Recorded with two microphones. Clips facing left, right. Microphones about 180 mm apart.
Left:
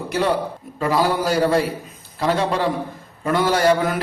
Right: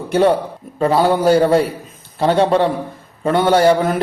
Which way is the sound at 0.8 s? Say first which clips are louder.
Right 5 dB; 25° right (ahead or behind).